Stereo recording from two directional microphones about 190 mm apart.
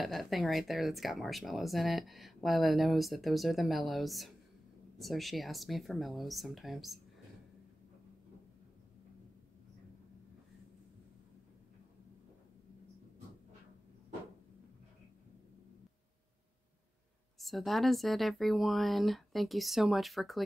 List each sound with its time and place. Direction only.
0.0 s speech: centre (ahead or behind)
17.4 s speech: centre (ahead or behind)